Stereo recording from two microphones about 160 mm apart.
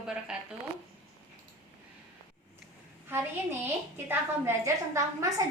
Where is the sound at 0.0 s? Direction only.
5° right (ahead or behind).